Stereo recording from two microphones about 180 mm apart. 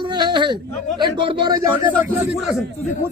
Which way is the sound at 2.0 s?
5° right (ahead or behind).